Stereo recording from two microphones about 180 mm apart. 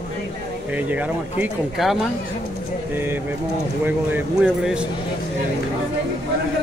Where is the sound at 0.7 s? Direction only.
10° right (ahead or behind).